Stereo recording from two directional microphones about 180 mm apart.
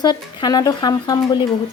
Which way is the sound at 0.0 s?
20° left (ahead or behind).